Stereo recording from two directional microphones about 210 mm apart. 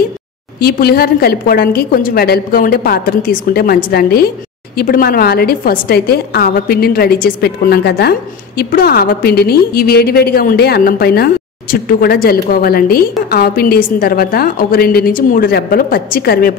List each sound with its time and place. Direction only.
0.6 s a woman's voice: 45° left (ahead or behind)